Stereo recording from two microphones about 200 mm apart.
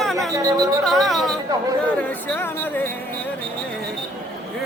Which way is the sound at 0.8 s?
Centre (ahead or behind).